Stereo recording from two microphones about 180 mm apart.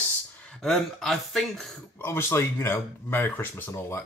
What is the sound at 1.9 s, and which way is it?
Speech, 15° left (ahead or behind).